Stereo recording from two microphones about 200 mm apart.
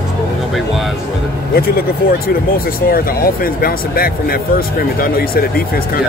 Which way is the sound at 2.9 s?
45° left (ahead or behind).